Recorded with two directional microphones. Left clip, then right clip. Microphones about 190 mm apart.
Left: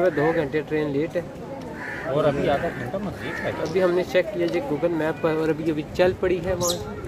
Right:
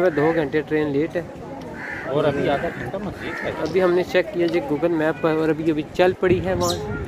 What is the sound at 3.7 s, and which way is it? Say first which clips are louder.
Speech: right 2 dB; 15° right (ahead or behind).